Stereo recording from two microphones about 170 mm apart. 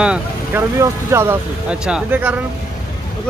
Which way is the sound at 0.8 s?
15° right (ahead or behind).